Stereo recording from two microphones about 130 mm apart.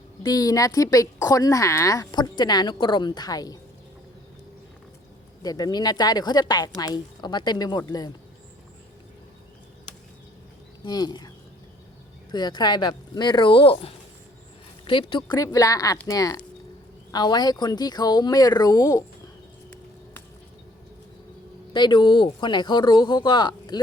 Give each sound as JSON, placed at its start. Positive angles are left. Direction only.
{"t": 0.2, "sound": "a woman's voice", "side_deg": 30}
{"t": 5.4, "sound": "speech", "side_deg": 30}
{"t": 10.8, "sound": "speech", "side_deg": 30}
{"t": 12.3, "sound": "speech", "side_deg": 35}
{"t": 15.4, "sound": "a woman's voice", "side_deg": 25}
{"t": 21.7, "sound": "speech", "side_deg": 35}